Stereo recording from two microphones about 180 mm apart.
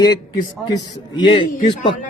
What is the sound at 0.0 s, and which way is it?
A man's voice, 20° left (ahead or behind).